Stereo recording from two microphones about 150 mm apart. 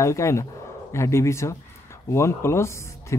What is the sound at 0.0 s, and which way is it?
Speech, 20° left (ahead or behind).